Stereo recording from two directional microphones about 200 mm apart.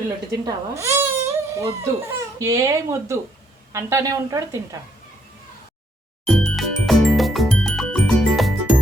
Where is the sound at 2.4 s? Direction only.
15° right (ahead or behind).